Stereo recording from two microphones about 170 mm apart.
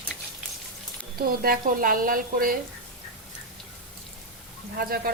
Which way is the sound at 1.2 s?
60° right (ahead or behind).